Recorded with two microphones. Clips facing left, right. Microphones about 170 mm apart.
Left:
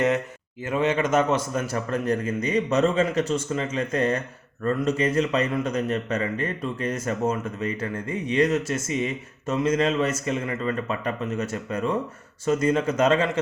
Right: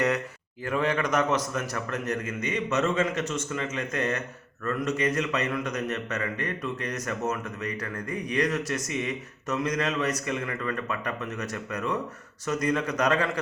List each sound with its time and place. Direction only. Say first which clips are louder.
0.6 s a man's voice: left 3 dB; 20° left (ahead or behind)